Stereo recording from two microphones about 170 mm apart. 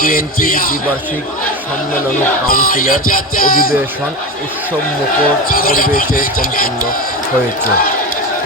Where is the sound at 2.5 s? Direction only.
55° left (ahead or behind).